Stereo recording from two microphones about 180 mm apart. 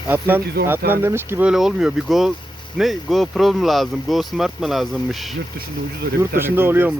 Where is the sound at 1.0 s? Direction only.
15° right (ahead or behind).